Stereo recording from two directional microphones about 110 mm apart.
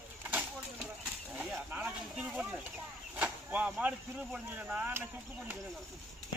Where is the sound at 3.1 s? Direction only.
15° right (ahead or behind).